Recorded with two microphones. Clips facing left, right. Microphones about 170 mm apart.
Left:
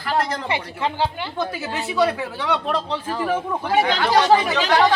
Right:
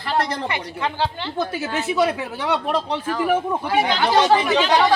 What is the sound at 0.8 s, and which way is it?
Speech, 20° left (ahead or behind).